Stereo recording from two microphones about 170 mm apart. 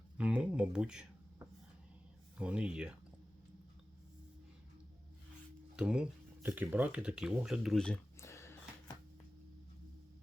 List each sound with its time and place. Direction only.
0.2 s speech: 5° right (ahead or behind)
2.4 s speech: 5° right (ahead or behind)
5.7 s speech: 5° right (ahead or behind)
8.2 s a sound: 15° left (ahead or behind)